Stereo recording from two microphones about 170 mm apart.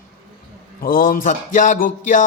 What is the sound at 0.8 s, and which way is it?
Speech, 55° left (ahead or behind).